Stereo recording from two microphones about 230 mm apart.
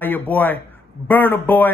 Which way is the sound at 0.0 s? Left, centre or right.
Centre.